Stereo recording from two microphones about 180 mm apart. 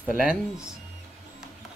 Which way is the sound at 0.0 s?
5° right (ahead or behind).